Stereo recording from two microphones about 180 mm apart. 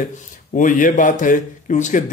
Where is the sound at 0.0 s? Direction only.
45° left (ahead or behind).